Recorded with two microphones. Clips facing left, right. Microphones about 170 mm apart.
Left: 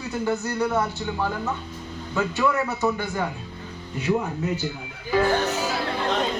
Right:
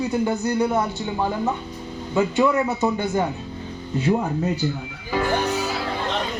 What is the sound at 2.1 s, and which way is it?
Speech, 20° right (ahead or behind).